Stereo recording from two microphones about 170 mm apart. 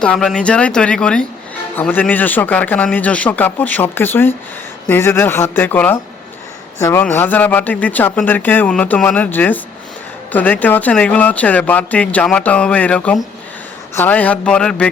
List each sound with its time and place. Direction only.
0.0 s speech: 5° left (ahead or behind)